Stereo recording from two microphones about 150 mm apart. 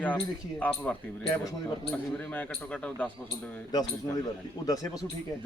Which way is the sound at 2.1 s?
10° left (ahead or behind).